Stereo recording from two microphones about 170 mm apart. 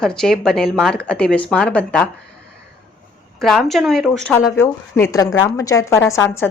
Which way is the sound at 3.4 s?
Centre (ahead or behind).